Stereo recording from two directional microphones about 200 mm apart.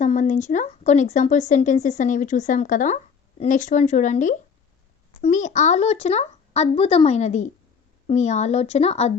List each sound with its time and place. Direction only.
0.0 s a woman's voice: 35° left (ahead or behind)